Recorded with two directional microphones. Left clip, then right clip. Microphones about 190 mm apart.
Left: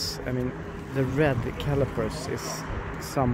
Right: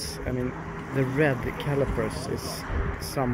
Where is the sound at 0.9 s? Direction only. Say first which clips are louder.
Even; 10° left (ahead or behind).